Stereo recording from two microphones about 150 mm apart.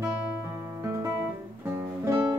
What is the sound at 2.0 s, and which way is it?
Music, 20° right (ahead or behind).